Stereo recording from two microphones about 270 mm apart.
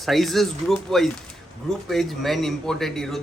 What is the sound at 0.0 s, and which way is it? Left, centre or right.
A man's voice, centre.